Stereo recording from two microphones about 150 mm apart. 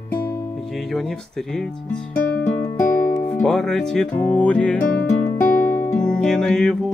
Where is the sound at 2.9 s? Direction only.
10° left (ahead or behind).